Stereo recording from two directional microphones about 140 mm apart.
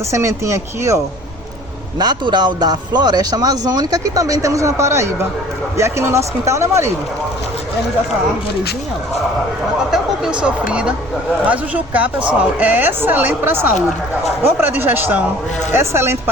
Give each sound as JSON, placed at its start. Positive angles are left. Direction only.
{"t": 0.1, "sound": "speech", "side_deg": -20}
{"t": 2.0, "sound": "speech", "side_deg": -30}
{"t": 9.9, "sound": "a sound", "side_deg": -5}
{"t": 10.7, "sound": "a woman's voice", "side_deg": -5}